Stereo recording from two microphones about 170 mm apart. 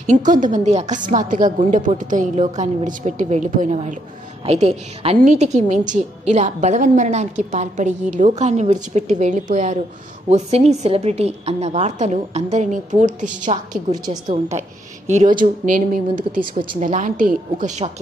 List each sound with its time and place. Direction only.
0.3 s a woman's voice: 45° right (ahead or behind)
13.9 s a woman's voice: 25° right (ahead or behind)
14.5 s a woman's voice: 40° right (ahead or behind)